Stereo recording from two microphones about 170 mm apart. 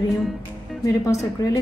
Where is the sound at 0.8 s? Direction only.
20° left (ahead or behind).